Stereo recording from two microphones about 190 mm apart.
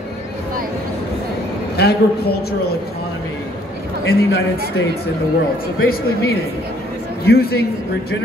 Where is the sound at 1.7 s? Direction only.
60° left (ahead or behind).